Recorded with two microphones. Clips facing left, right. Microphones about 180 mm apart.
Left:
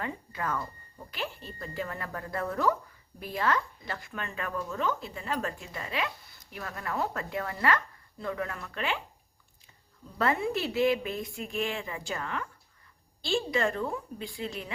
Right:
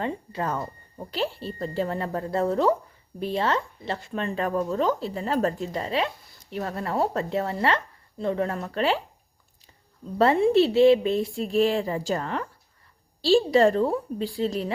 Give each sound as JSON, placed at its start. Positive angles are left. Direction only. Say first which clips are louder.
{"t": 0.0, "sound": "speech", "louder": "right 6 dB", "side_deg": -30}
{"t": 10.2, "sound": "speech", "louder": "right 10 dB", "side_deg": -30}